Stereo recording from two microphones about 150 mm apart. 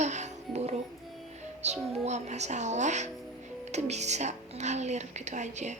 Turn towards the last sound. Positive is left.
turn(degrees=-50)  # may be behind; listen again after turning